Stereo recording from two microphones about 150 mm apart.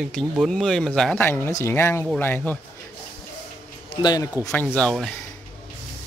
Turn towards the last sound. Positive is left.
turn(degrees=5)  # may be behind; listen again after turning